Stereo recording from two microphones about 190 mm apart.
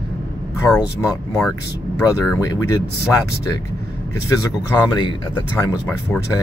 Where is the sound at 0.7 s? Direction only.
20° left (ahead or behind).